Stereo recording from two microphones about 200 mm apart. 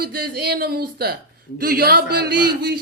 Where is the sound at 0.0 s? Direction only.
55° right (ahead or behind).